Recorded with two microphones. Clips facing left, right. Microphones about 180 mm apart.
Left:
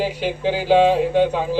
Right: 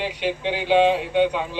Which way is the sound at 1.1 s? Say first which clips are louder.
Left 3 dB; 40° left (ahead or behind).